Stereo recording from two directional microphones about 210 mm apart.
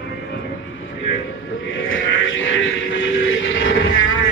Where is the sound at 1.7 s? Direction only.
70° left (ahead or behind).